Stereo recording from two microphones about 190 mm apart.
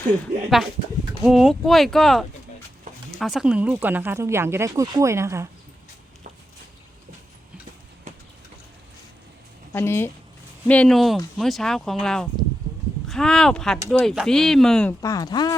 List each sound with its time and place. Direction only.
1.2 s speech: centre (ahead or behind)
9.7 s speech: 10° left (ahead or behind)
15.0 s speech: 20° left (ahead or behind)